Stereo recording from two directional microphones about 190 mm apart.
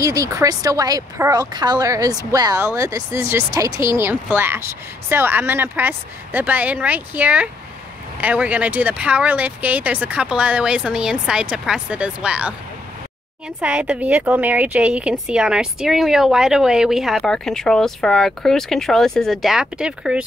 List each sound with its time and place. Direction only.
0.0 s speech: 15° right (ahead or behind)
13.6 s speech: 5° right (ahead or behind)